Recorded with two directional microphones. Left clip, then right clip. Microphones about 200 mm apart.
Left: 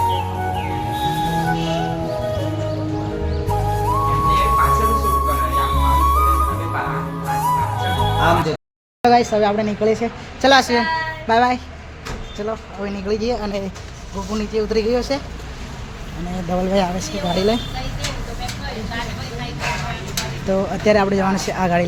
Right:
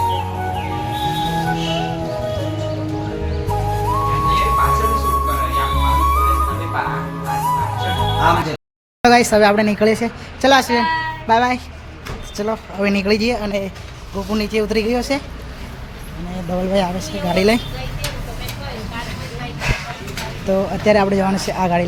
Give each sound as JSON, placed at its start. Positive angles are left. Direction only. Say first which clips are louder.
{"t": 0.0, "sound": "music", "louder": "even", "side_deg": 0}
{"t": 9.0, "sound": "a woman's voice", "louder": "right 3 dB", "side_deg": -20}
{"t": 12.5, "sound": "speech", "louder": "right 7 dB", "side_deg": -30}
{"t": 13.3, "sound": "a woman's voice", "louder": "right 2 dB", "side_deg": -5}
{"t": 14.3, "sound": "a woman's voice", "louder": "right 1 dB", "side_deg": -25}
{"t": 16.6, "sound": "speech", "louder": "right 1 dB", "side_deg": 0}
{"t": 17.3, "sound": "a woman's voice", "louder": "right 4 dB", "side_deg": -15}
{"t": 19.6, "sound": "a sound", "louder": "right 1 dB", "side_deg": 0}
{"t": 20.5, "sound": "speech", "louder": "right 1 dB", "side_deg": 0}